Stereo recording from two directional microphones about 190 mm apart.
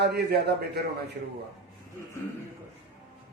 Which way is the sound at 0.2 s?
60° right (ahead or behind).